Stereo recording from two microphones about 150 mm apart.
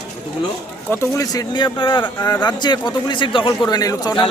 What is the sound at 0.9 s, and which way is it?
A man's voice, 20° left (ahead or behind).